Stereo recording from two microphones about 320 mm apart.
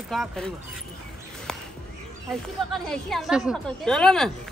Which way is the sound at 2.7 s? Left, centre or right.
Centre.